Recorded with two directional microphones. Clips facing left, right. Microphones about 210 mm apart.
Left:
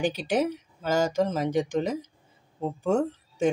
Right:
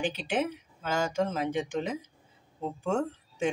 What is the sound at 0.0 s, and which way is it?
Speech, 40° left (ahead or behind).